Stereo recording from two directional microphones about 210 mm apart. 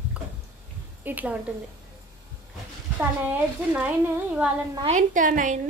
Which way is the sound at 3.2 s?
5° right (ahead or behind).